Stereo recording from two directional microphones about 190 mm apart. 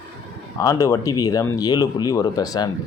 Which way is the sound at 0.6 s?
20° left (ahead or behind).